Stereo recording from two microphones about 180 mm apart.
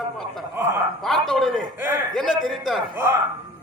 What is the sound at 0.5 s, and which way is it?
Speech, 15° right (ahead or behind).